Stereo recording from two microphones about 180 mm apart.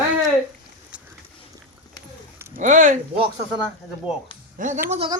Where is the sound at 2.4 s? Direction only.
15° right (ahead or behind).